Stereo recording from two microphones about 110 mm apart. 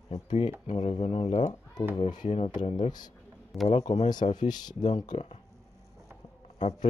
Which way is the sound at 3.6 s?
75° left (ahead or behind).